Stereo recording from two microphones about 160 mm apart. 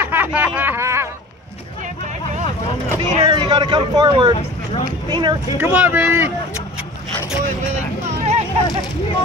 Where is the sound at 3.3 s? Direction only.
30° right (ahead or behind).